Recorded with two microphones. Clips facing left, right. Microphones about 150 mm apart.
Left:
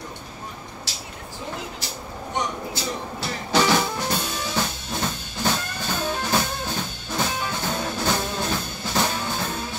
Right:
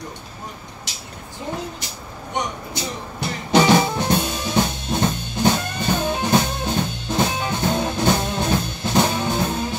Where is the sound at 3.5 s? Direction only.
20° right (ahead or behind).